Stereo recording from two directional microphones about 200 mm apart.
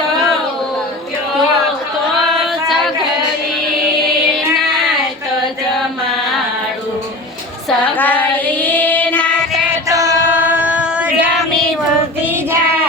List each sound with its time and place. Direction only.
2.6 s singing: centre (ahead or behind)
7.9 s child singing: 10° left (ahead or behind)
9.9 s female singing: 15° right (ahead or behind)